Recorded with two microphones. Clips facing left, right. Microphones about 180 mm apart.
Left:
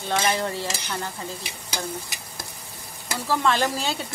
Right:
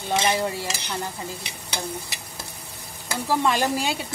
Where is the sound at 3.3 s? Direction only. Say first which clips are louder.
Right 1 dB; 15° right (ahead or behind).